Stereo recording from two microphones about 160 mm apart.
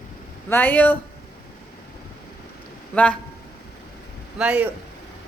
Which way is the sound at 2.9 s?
10° left (ahead or behind).